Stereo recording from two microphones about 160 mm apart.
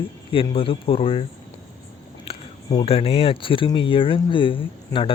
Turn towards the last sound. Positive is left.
turn(degrees=35)  # may be behind; listen again after turning